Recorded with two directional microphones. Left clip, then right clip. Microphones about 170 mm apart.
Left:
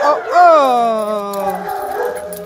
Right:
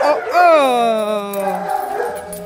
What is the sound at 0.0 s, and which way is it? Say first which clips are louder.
Dog: left 2 dB; 10° right (ahead or behind).